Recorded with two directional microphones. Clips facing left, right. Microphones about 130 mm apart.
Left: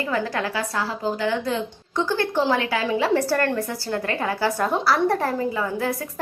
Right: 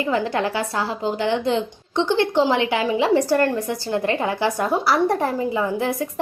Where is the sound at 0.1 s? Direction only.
25° right (ahead or behind).